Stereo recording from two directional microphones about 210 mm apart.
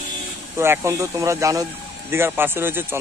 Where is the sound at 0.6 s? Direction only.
15° right (ahead or behind).